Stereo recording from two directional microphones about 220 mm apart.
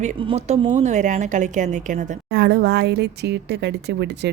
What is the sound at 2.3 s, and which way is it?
Speech, 50° right (ahead or behind).